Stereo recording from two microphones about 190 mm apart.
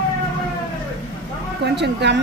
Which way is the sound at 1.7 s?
65° right (ahead or behind).